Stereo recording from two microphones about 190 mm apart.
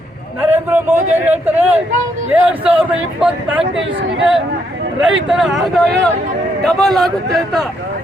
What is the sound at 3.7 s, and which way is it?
Speech, 75° right (ahead or behind).